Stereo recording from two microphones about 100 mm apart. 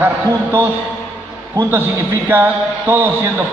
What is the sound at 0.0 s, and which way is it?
Speech, 20° right (ahead or behind).